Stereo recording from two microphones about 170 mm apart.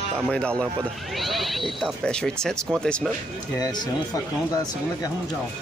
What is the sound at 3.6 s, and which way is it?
Speech, 25° left (ahead or behind).